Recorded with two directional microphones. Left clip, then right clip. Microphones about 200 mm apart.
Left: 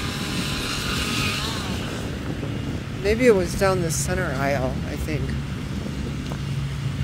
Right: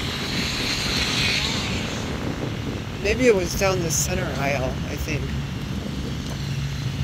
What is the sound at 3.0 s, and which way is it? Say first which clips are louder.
Speech: left 1 dB; 25° left (ahead or behind).